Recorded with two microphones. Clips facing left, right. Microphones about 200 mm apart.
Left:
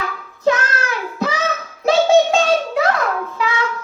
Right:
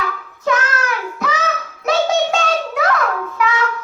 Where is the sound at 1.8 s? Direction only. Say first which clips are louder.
Left 4 dB; 30° left (ahead or behind).